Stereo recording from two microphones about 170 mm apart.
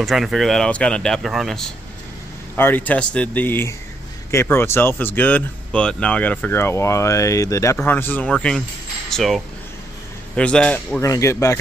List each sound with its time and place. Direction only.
0.0 s speech: centre (ahead or behind)
2.5 s speech: 10° left (ahead or behind)
11.0 s speech: 20° left (ahead or behind)